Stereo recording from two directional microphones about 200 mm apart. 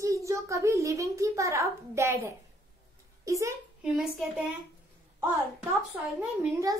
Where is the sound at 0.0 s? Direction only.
15° right (ahead or behind).